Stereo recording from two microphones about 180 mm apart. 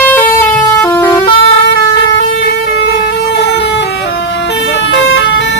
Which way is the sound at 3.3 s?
70° left (ahead or behind).